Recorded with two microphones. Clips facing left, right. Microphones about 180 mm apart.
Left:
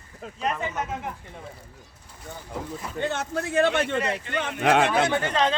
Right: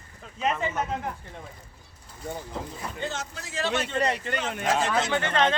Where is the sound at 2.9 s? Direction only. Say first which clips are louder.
Left 8 dB; 60° left (ahead or behind).